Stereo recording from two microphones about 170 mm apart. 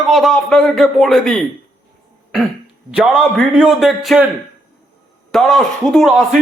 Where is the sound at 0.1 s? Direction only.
Centre (ahead or behind).